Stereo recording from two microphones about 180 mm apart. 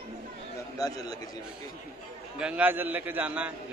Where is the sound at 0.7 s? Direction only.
20° left (ahead or behind).